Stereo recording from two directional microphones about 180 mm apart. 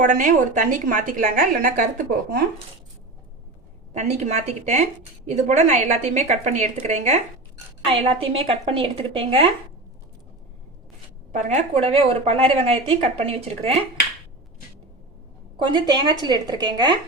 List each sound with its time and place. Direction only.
0.0 s a woman's voice: 45° right (ahead or behind)
4.1 s a woman's voice: 40° right (ahead or behind)
11.3 s a woman's voice: 40° right (ahead or behind)
15.5 s a woman's voice: 25° right (ahead or behind)